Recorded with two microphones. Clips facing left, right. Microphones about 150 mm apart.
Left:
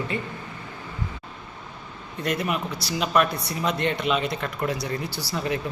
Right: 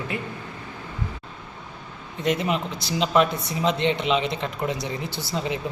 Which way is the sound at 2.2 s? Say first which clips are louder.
Right 2 dB; 20° right (ahead or behind).